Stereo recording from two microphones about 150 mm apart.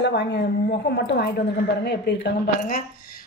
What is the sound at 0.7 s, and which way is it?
Speech, 90° left.